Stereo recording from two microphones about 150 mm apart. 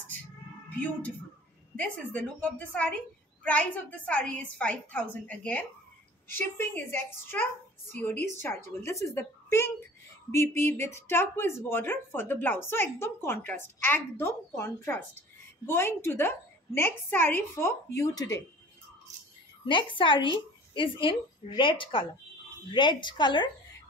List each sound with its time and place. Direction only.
0.7 s speech: 10° left (ahead or behind)
19.6 s a woman's voice: 35° left (ahead or behind)